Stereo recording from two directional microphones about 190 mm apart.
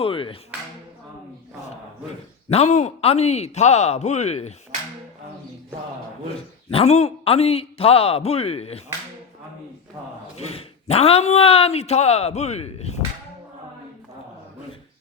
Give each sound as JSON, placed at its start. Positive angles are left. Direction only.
{"t": 0.0, "sound": "speech", "side_deg": 30}
{"t": 2.5, "sound": "a man's voice", "side_deg": 35}
{"t": 6.7, "sound": "a man's voice", "side_deg": 30}
{"t": 10.3, "sound": "speech", "side_deg": 30}